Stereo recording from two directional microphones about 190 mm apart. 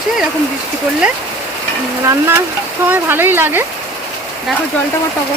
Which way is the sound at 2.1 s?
15° right (ahead or behind).